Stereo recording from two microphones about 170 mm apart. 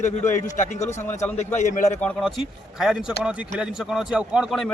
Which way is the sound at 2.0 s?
5° left (ahead or behind).